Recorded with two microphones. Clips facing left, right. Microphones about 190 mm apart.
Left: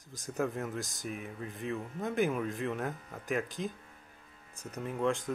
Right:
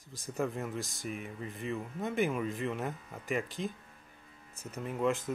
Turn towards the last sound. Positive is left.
turn(degrees=-5)  # may be behind; listen again after turning